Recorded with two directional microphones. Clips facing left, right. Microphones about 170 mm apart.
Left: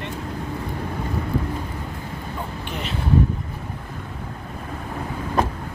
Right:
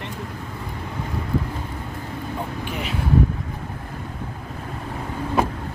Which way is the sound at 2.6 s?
5° right (ahead or behind).